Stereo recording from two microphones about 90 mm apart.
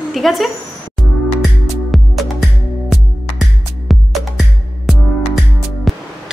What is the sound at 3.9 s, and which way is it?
Music, centre (ahead or behind).